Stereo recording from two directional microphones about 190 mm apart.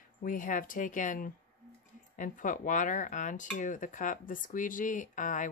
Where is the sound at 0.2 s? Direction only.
45° left (ahead or behind).